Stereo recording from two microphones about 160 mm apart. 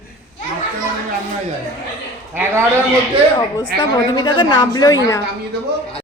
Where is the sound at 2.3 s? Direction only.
10° right (ahead or behind).